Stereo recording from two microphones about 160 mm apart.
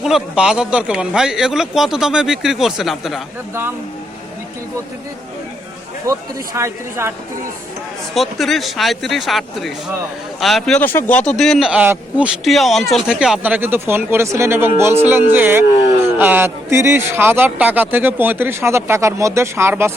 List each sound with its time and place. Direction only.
0.0 s a man's voice: 5° right (ahead or behind)
6.1 s a man's voice: 20° right (ahead or behind)
8.1 s a man's voice: centre (ahead or behind); by 19.9 s 15° right (ahead or behind)